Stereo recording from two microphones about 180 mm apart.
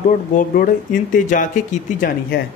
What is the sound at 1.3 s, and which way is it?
Speech, 45° left (ahead or behind).